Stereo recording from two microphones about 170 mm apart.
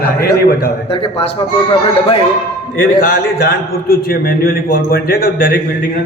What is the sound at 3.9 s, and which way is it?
A man's voice, 60° left (ahead or behind).